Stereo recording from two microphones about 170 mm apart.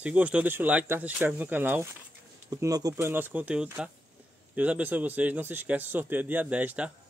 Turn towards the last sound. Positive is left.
turn(degrees=-10)  # may be behind; listen again after turning